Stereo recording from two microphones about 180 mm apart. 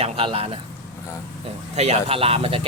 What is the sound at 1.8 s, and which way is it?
Speech, 35° right (ahead or behind).